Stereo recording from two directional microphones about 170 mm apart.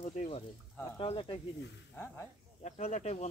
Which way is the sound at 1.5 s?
90° left.